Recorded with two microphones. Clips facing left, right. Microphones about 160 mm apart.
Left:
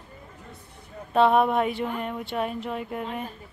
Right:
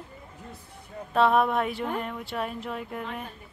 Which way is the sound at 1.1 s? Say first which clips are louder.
Left 2 dB; centre (ahead or behind).